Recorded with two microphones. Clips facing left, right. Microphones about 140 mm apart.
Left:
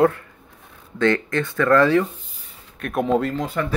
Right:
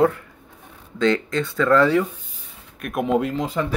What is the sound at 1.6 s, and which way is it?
Speech, 15° right (ahead or behind).